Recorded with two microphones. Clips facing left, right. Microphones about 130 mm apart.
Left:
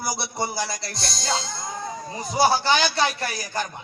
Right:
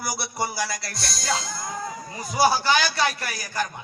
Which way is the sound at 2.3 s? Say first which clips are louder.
Even; 25° left (ahead or behind).